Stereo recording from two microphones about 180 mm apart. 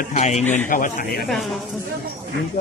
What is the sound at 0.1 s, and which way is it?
A man's voice, 40° left (ahead or behind).